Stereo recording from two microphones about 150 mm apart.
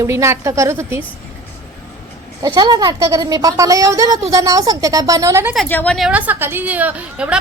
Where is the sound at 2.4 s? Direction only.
25° right (ahead or behind).